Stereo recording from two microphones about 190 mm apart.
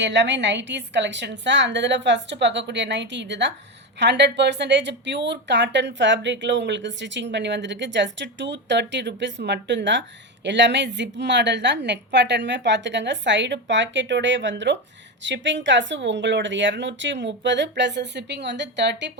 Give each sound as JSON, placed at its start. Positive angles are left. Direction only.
{"t": 0.0, "sound": "speech", "side_deg": -65}